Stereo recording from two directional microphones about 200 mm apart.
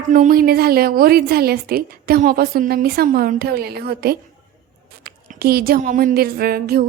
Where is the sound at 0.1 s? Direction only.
45° right (ahead or behind).